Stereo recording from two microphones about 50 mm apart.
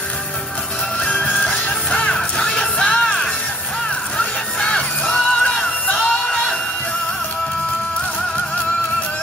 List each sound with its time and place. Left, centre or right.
0.9 s music: left
2.1 s music: centre
4.2 s music: centre